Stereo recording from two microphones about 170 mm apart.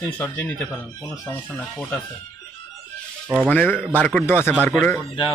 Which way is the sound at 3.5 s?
10° left (ahead or behind).